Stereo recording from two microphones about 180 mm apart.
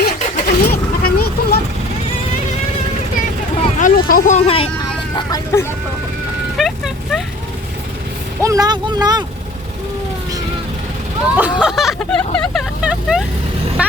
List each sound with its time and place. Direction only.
0.0 s vehicle: 60° left (ahead or behind)
3.8 s vehicle: 50° left (ahead or behind)
4.4 s speech: 30° left (ahead or behind)
5.1 s hubbub: 15° left (ahead or behind)
6.6 s vehicle: centre (ahead or behind)
8.4 s speech: 20° right (ahead or behind)
11.3 s speech: 5° right (ahead or behind)
12.8 s vehicle: 5° right (ahead or behind)